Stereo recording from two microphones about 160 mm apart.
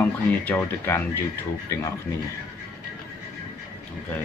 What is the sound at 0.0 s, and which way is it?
Speech, 15° left (ahead or behind).